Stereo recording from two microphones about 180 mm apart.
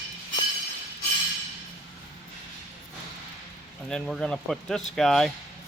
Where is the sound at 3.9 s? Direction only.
5° left (ahead or behind).